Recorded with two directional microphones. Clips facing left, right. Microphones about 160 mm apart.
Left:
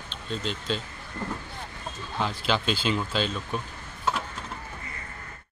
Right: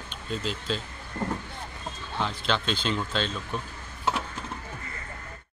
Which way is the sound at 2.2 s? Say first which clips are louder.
Left 2 dB; 5° left (ahead or behind).